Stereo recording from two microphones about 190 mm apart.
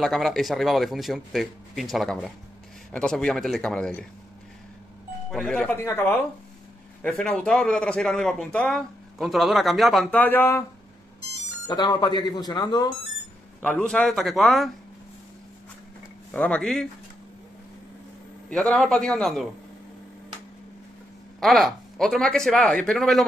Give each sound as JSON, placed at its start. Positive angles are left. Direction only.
{"t": 0.0, "sound": "a man's voice", "side_deg": 0}
{"t": 5.3, "sound": "a man's voice", "side_deg": 5}
{"t": 11.6, "sound": "speech", "side_deg": 20}
{"t": 13.6, "sound": "a man's voice", "side_deg": 5}
{"t": 16.3, "sound": "speech", "side_deg": 5}
{"t": 18.5, "sound": "a man's voice", "side_deg": 5}
{"t": 21.4, "sound": "a man's voice", "side_deg": 0}